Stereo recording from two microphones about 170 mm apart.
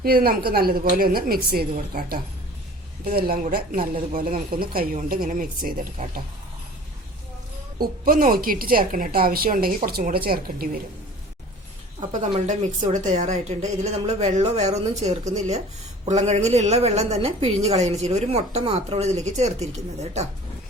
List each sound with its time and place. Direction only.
0.0 s speech: 60° right (ahead or behind)
8.0 s speech: 55° right (ahead or behind)
11.9 s a woman's voice: 40° right (ahead or behind)